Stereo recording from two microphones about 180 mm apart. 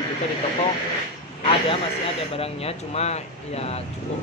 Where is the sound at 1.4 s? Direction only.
30° left (ahead or behind).